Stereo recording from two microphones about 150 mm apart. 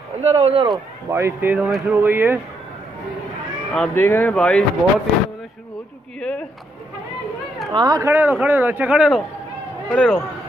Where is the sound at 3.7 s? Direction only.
5° left (ahead or behind).